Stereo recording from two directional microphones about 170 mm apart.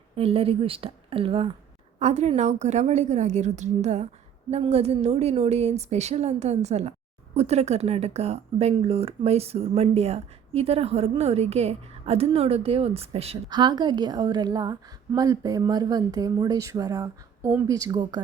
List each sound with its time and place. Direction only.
0.2 s speech: 35° right (ahead or behind)
13.5 s a woman's voice: 25° right (ahead or behind)